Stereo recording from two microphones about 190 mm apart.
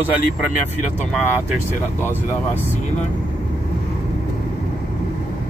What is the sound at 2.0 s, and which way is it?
Speech, 10° left (ahead or behind).